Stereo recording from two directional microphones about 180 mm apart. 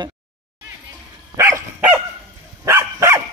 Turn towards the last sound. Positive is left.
turn(degrees=-15)  # may be behind; listen again after turning